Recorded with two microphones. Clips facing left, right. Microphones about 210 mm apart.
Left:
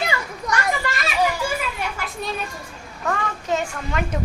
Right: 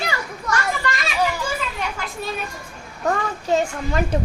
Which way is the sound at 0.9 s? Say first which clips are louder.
Right 2 dB; 5° left (ahead or behind).